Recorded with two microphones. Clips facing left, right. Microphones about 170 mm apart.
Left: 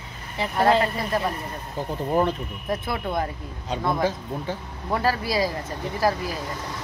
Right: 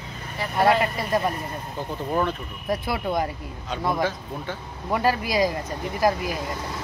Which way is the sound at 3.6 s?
35° left (ahead or behind).